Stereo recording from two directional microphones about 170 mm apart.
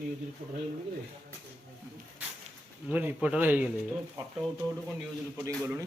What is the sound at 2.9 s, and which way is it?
Speech, 10° right (ahead or behind).